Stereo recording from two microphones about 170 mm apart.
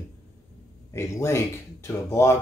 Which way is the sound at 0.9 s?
15° left (ahead or behind).